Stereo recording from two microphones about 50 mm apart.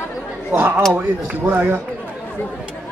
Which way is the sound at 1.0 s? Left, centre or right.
Right.